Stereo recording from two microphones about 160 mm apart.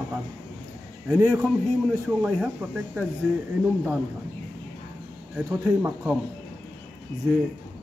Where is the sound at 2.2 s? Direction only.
Centre (ahead or behind).